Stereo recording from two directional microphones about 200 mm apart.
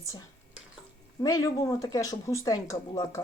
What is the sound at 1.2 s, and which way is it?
Speech, 15° left (ahead or behind).